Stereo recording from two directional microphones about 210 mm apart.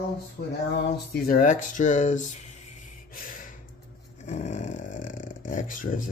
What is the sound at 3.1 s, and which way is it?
Gasp, 40° left (ahead or behind).